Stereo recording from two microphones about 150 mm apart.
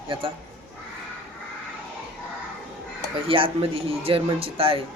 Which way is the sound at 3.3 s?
40° right (ahead or behind).